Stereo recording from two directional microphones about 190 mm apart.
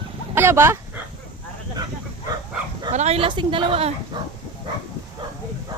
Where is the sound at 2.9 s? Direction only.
35° right (ahead or behind).